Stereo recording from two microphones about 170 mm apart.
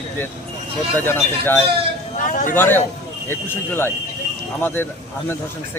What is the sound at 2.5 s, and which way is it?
Speech, 10° left (ahead or behind).